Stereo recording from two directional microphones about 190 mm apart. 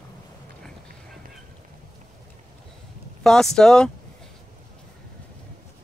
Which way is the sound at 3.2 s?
Centre (ahead or behind).